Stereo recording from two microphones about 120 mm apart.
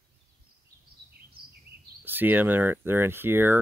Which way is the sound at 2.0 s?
15° right (ahead or behind).